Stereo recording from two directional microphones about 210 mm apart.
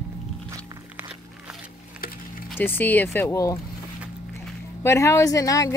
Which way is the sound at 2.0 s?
45° left (ahead or behind).